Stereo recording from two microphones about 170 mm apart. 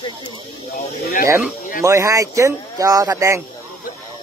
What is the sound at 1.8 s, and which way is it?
Speech, 20° right (ahead or behind).